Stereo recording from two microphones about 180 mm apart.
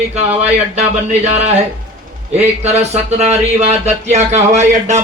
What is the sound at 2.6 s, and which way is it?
Speech, 40° right (ahead or behind).